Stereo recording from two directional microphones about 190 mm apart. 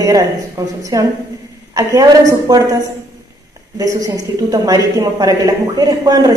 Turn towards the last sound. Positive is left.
turn(degrees=-20)  # may be behind; listen again after turning